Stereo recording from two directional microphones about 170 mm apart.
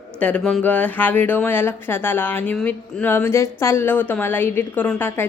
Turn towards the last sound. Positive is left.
turn(degrees=10)  # may be behind; listen again after turning